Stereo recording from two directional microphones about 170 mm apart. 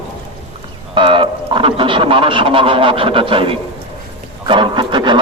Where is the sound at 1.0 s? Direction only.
30° right (ahead or behind).